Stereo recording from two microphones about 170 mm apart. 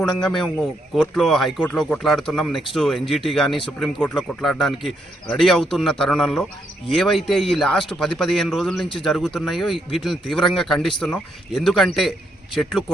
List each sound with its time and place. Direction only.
0.2 s speech: centre (ahead or behind)